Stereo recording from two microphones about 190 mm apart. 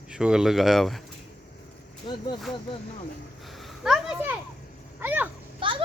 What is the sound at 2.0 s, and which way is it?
Speech, 30° left (ahead or behind).